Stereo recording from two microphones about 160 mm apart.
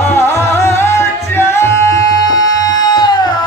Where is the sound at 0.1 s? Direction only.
15° left (ahead or behind).